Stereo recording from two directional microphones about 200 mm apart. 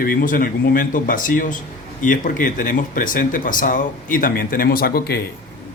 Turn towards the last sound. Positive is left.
turn(degrees=50)  # may be behind; listen again after turning